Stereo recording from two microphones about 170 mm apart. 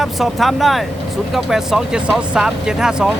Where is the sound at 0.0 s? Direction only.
Centre (ahead or behind).